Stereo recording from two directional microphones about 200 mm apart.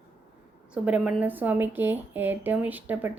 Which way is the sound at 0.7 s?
5° right (ahead or behind).